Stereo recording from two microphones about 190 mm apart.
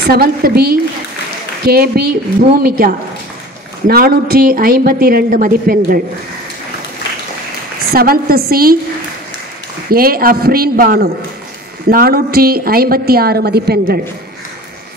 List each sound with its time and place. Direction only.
0.0 s a woman's voice: 55° right (ahead or behind)
7.9 s a woman's voice: 50° right (ahead or behind)
9.8 s a woman's voice: 50° right (ahead or behind)